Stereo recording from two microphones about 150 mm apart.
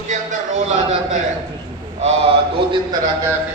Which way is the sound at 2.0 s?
40° right (ahead or behind).